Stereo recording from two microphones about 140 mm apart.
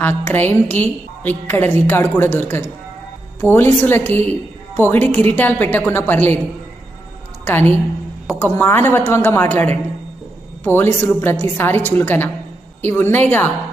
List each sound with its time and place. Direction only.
0.0 s a woman's voice: 15° left (ahead or behind)
7.4 s a woman's voice: 15° left (ahead or behind)